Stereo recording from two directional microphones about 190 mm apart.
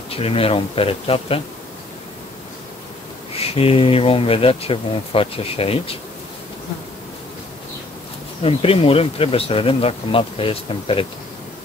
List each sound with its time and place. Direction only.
0.1 s speech: 30° left (ahead or behind)
3.3 s speech: 30° left (ahead or behind)
8.4 s speech: 30° left (ahead or behind)